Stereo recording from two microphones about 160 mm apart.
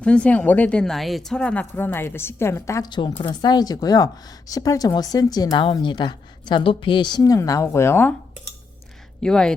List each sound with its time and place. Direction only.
0.0 s speech: 5° left (ahead or behind)
9.2 s speech: 5° left (ahead or behind)